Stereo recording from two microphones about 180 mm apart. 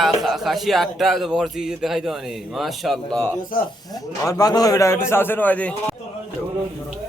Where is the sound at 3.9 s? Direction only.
20° left (ahead or behind).